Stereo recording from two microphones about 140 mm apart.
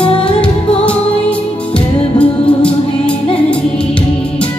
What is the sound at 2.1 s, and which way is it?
Music, 10° left (ahead or behind).